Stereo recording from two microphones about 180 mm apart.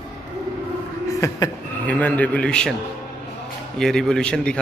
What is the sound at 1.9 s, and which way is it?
Speech, 10° left (ahead or behind).